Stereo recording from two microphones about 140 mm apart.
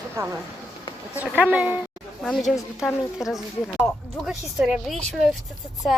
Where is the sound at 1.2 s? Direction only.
10° right (ahead or behind).